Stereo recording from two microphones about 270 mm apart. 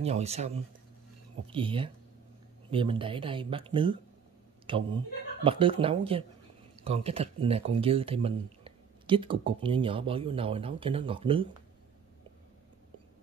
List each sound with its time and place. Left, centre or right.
0.0 s speech: right
1.5 s speech: centre